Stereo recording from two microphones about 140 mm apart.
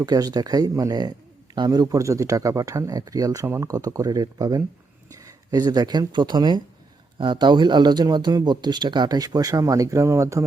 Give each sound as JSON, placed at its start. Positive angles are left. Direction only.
{"t": 0.0, "sound": "speech", "side_deg": -25}